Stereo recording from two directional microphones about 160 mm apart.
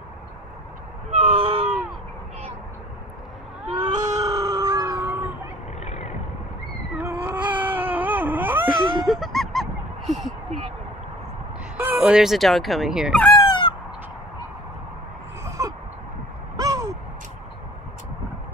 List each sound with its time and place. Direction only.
1.1 s a sound: 40° right (ahead or behind)
3.8 s baby cry: 25° right (ahead or behind)
5.8 s vehicle: 45° left (ahead or behind)
7.0 s baby cry: 10° right (ahead or behind)
8.6 s honk: centre (ahead or behind)
11.7 s fowl: 10° right (ahead or behind)
13.4 s a sound: 30° left (ahead or behind)
15.4 s a sound: 20° right (ahead or behind)
16.5 s gasp: 25° right (ahead or behind)